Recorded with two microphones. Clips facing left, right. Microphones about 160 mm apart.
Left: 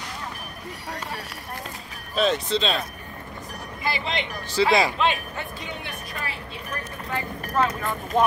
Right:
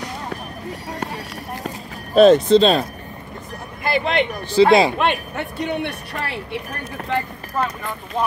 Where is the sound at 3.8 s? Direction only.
55° right (ahead or behind); by 7.0 s 70° right (ahead or behind).